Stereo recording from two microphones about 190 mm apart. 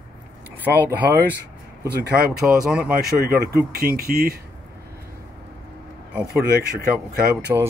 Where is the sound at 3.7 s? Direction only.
50° right (ahead or behind).